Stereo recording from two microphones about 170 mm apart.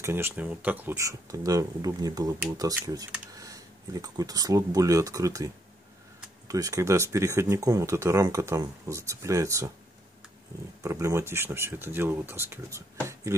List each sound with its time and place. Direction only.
0.0 s speech: 15° right (ahead or behind)
10.8 s speech: 15° right (ahead or behind)